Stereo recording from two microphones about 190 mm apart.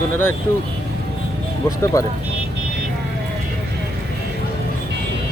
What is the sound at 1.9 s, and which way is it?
Speech, 20° left (ahead or behind).